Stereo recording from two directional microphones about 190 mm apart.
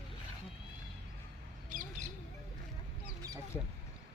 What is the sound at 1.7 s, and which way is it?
Squawk, 45° right (ahead or behind).